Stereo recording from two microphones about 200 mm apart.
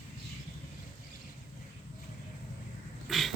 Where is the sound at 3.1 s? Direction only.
Centre (ahead or behind).